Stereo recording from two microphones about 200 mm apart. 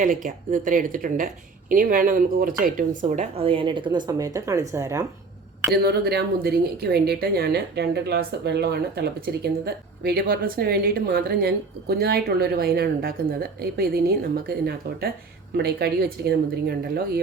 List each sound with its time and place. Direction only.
0.0 s speech: 40° right (ahead or behind); by 5.0 s 15° right (ahead or behind)
5.7 s speech: 50° right (ahead or behind)